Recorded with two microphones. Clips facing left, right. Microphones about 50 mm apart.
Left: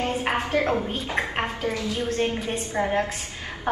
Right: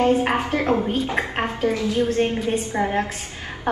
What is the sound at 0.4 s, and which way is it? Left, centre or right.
A woman's voice, right.